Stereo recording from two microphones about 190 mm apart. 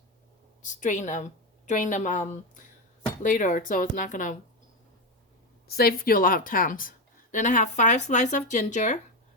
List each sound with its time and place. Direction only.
0.6 s speech: 40° left (ahead or behind)
5.6 s speech: 55° left (ahead or behind)